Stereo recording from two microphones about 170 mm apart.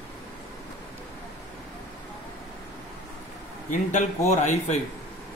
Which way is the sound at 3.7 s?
50° left (ahead or behind).